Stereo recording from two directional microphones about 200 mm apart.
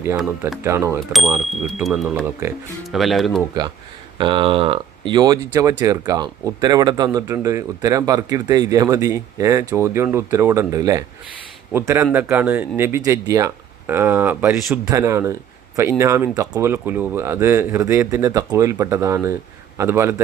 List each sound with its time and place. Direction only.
0.2 s speech: centre (ahead or behind)
0.6 s speech: 15° right (ahead or behind)
1.1 s speech: centre (ahead or behind)
4.2 s speech: 25° right (ahead or behind)